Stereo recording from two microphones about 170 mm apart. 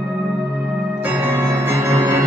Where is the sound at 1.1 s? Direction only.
15° right (ahead or behind).